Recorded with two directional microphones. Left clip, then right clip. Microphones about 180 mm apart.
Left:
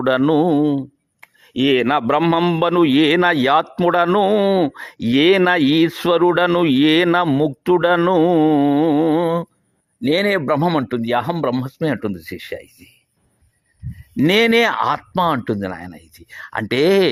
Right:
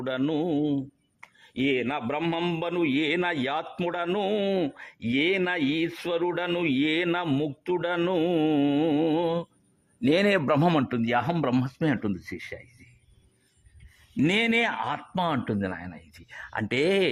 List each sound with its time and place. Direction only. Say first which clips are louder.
0.0 s a man's voice: left 12 dB; 40° left (ahead or behind)
7.4 s a man's voice: left 13 dB; 45° left (ahead or behind)
8.2 s speech: left 10 dB; 20° left (ahead or behind)
10.0 s a man's voice: left 5 dB; 15° left (ahead or behind); by 12.9 s 30° left (ahead or behind)
14.2 s speech: left 10 dB; 35° left (ahead or behind)